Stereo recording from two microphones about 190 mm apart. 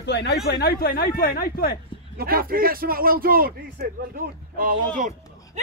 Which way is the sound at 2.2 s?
50° right (ahead or behind).